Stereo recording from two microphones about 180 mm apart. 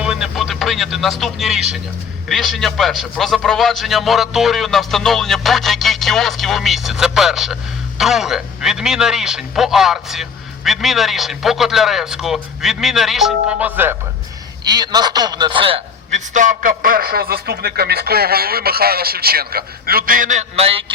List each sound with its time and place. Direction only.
0.0 s music: 5° right (ahead or behind)
1.2 s a man's voice: centre (ahead or behind)
14.7 s a man's voice: 25° right (ahead or behind)
16.3 s a man's voice: 45° right (ahead or behind)